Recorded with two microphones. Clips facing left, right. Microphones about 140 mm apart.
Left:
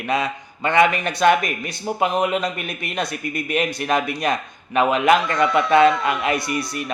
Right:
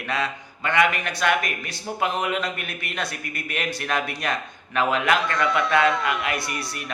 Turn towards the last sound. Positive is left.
turn(degrees=20)  # may be behind; listen again after turning